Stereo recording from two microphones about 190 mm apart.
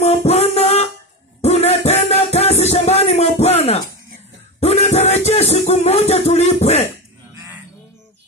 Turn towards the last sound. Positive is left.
turn(degrees=-15)  # may be behind; listen again after turning